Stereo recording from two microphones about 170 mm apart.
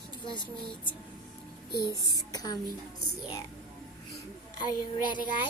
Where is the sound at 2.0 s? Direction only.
25° left (ahead or behind).